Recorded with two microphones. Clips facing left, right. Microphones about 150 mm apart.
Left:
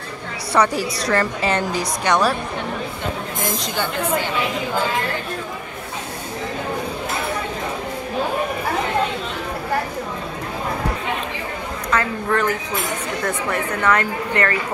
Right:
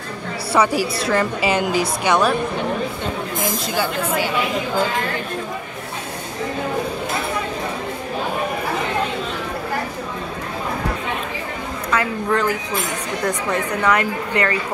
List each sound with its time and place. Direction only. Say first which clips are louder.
0.5 s a woman's voice: right 1 dB; 5° right (ahead or behind)
3.4 s a woman's voice: right 2 dB; 5° right (ahead or behind)
11.9 s a woman's voice: right 1 dB; 15° right (ahead or behind)